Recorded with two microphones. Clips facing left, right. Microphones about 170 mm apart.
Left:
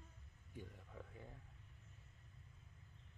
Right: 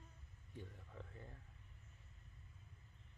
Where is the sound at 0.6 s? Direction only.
10° left (ahead or behind).